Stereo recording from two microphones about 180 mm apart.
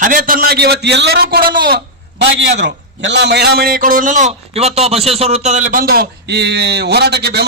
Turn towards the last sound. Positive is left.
turn(degrees=-65)  # may be behind; listen again after turning